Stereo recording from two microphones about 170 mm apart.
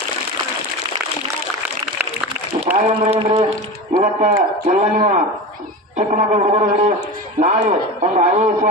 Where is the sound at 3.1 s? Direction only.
35° right (ahead or behind).